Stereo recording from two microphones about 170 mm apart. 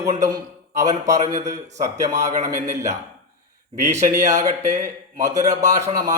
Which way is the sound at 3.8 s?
15° right (ahead or behind).